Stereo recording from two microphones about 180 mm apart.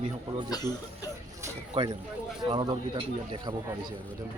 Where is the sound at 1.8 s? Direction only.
30° right (ahead or behind).